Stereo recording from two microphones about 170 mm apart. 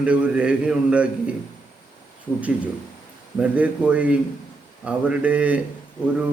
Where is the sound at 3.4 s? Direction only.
5° right (ahead or behind).